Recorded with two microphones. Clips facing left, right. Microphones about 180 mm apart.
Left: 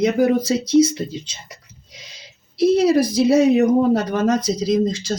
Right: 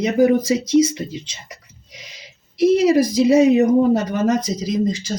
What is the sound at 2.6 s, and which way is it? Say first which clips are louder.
Speech: right 1 dB; 15° right (ahead or behind).